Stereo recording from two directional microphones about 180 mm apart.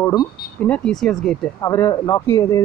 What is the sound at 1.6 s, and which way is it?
Speech, 15° left (ahead or behind).